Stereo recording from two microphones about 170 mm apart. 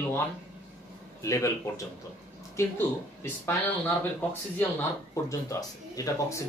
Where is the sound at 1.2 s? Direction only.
15° left (ahead or behind).